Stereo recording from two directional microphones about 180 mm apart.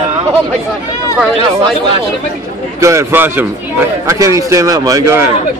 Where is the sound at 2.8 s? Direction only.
15° right (ahead or behind).